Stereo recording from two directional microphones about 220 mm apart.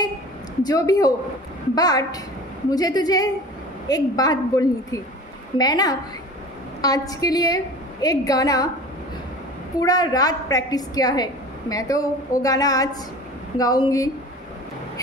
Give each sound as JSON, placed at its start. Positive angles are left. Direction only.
{"t": 0.7, "sound": "a woman's voice", "side_deg": 15}
{"t": 9.8, "sound": "a woman's voice", "side_deg": 15}